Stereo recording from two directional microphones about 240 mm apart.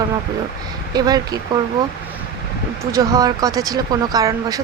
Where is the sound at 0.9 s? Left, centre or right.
Centre.